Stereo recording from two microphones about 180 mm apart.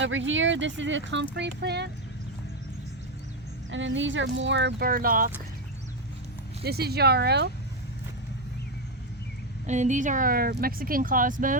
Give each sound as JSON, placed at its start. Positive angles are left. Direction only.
{"t": 0.0, "sound": "speech", "side_deg": -90}
{"t": 3.7, "sound": "speech", "side_deg": -90}
{"t": 4.9, "sound": "speech", "side_deg": -50}
{"t": 6.6, "sound": "speech", "side_deg": -60}
{"t": 9.6, "sound": "speech", "side_deg": -40}